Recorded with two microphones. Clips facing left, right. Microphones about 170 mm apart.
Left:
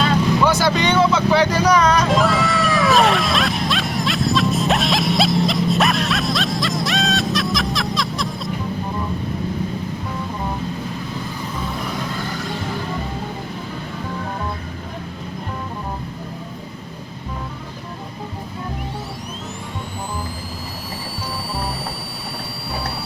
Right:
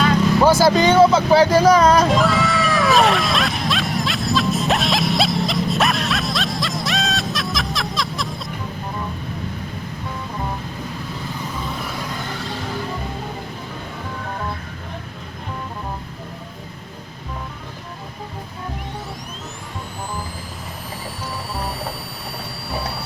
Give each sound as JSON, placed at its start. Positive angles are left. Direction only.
{"t": 0.4, "sound": "speech", "side_deg": -35}
{"t": 2.0, "sound": "music", "side_deg": 0}